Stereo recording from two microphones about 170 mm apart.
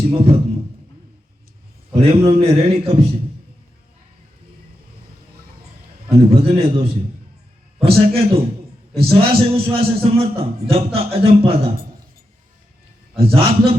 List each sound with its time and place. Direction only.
0.0 s a man's voice: 35° right (ahead or behind)
1.9 s a man's voice: 35° right (ahead or behind)
6.1 s a man's voice: 35° right (ahead or behind)
13.1 s a man's voice: 35° right (ahead or behind)